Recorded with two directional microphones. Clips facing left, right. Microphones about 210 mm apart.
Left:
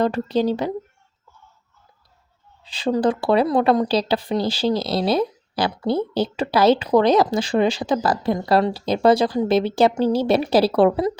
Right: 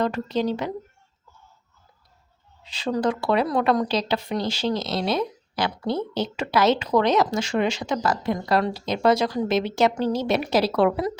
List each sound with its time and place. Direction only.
0.0 s speech: 35° left (ahead or behind)
2.7 s speech: 30° left (ahead or behind)